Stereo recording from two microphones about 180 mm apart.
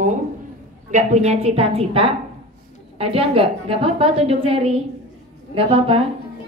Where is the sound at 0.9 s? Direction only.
35° right (ahead or behind).